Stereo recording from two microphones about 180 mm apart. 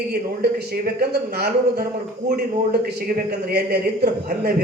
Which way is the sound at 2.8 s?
55° right (ahead or behind).